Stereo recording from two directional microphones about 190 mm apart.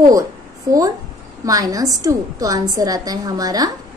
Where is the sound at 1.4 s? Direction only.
20° right (ahead or behind).